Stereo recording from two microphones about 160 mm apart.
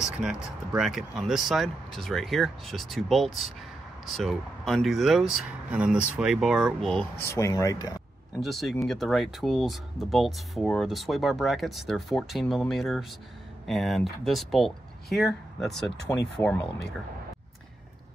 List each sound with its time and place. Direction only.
0.0 s speech: 5° right (ahead or behind)
7.2 s speech: 20° left (ahead or behind)
8.4 s speech: centre (ahead or behind)